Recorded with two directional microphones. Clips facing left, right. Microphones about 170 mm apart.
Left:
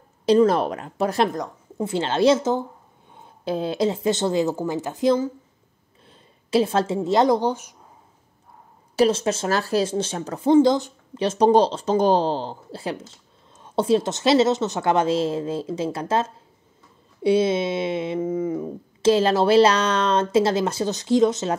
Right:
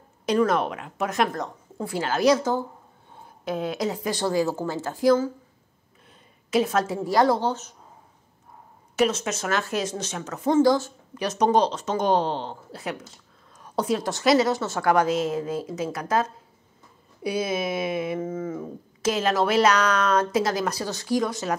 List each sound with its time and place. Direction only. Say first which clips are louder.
0.2 s a woman's voice: left 5 dB; 30° left (ahead or behind)
1.3 s a woman's voice: left 2 dB; 15° left (ahead or behind)
6.0 s a woman's voice: left 4 dB; 30° left (ahead or behind); by 7.7 s 15° left (ahead or behind)
8.9 s a woman's voice: left 4 dB; 30° left (ahead or behind)
10.6 s a woman's voice: left 1 dB; 20° left (ahead or behind)
19.0 s a woman's voice: left 6 dB; 30° left (ahead or behind)